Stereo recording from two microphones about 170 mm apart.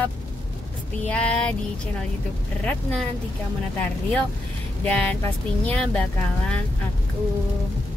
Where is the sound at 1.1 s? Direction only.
5° left (ahead or behind).